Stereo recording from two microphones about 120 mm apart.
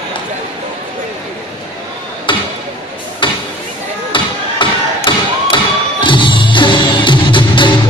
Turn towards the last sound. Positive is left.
turn(degrees=40)  # may be behind; listen again after turning